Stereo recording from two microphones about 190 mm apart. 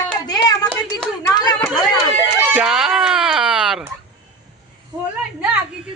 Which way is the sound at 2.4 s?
10° right (ahead or behind).